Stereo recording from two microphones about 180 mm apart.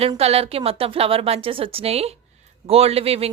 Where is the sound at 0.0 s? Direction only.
35° right (ahead or behind).